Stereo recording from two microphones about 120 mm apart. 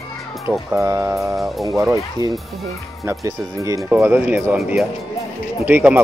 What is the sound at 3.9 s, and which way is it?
Speech, 15° right (ahead or behind).